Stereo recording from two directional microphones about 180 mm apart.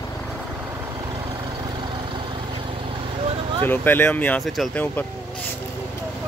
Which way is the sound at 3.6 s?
10° left (ahead or behind).